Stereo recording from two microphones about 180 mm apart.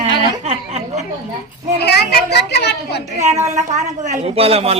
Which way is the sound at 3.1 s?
40° right (ahead or behind).